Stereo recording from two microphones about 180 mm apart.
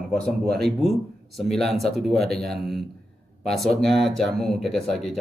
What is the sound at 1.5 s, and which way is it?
Speech, centre (ahead or behind).